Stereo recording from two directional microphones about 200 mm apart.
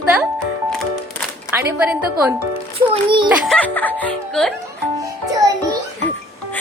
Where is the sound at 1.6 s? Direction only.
10° right (ahead or behind).